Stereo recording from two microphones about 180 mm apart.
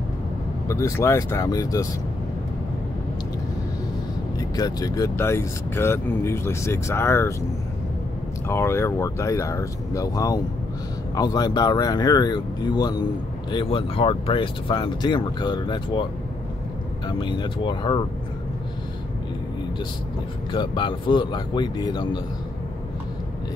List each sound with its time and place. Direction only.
0.7 s speech: 15° left (ahead or behind)
4.4 s speech: 20° left (ahead or behind)
8.5 s speech: 15° left (ahead or behind)
17.2 s speech: 25° left (ahead or behind)
20.5 s speech: 25° left (ahead or behind)